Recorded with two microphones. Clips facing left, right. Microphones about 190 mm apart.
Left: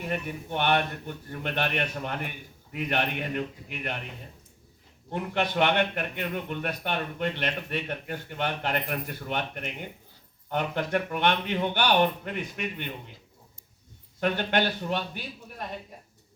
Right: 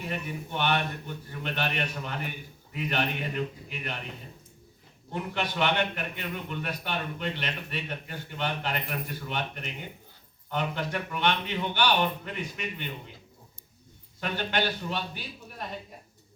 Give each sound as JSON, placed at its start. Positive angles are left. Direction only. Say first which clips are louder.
{"t": 0.0, "sound": "a man's voice", "louder": "left 2 dB", "side_deg": 50}
{"t": 5.1, "sound": "a man's voice", "louder": "left 4 dB", "side_deg": 55}
{"t": 14.2, "sound": "a man's voice", "louder": "left 4 dB", "side_deg": 55}